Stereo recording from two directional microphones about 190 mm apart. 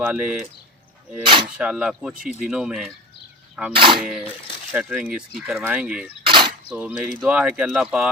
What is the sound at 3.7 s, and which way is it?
Speech, 25° right (ahead or behind).